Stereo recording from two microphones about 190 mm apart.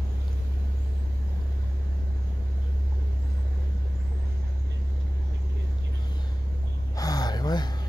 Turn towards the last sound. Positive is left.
turn(degrees=20)  # may be behind; listen again after turning